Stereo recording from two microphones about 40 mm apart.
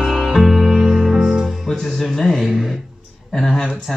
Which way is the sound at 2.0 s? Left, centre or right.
Centre.